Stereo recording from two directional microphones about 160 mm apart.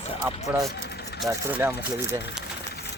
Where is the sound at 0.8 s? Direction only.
90° left.